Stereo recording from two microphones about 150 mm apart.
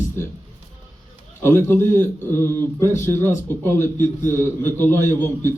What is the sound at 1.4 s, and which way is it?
A man's voice, 15° left (ahead or behind).